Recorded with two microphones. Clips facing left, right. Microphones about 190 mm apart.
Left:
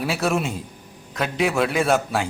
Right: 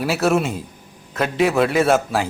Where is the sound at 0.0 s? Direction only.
Centre (ahead or behind).